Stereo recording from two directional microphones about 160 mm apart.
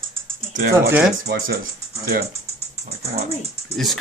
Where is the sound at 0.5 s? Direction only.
60° right (ahead or behind).